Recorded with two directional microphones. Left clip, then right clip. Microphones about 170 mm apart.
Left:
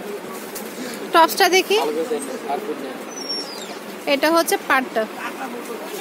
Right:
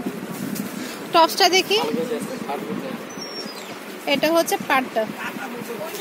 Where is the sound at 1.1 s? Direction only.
Centre (ahead or behind).